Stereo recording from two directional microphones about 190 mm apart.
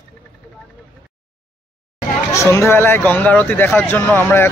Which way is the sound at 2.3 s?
15° left (ahead or behind).